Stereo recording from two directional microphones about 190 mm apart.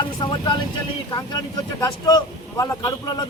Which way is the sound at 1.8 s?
20° left (ahead or behind).